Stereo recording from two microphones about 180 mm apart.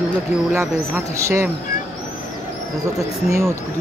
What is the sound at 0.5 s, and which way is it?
Speech, 15° right (ahead or behind).